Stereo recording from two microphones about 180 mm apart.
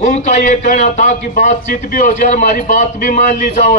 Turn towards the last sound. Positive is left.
turn(degrees=40)  # may be behind; listen again after turning